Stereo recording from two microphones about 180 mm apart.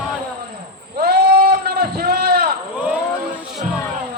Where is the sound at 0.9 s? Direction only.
60° right (ahead or behind).